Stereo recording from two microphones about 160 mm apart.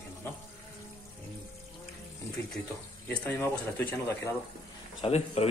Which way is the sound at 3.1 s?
10° left (ahead or behind).